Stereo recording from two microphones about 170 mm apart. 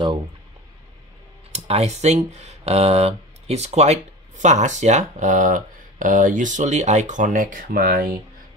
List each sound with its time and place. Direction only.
1.5 s speech: 40° right (ahead or behind); by 8.2 s 60° right (ahead or behind)